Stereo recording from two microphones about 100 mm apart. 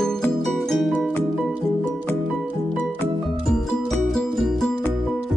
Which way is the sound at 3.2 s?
Centre (ahead or behind).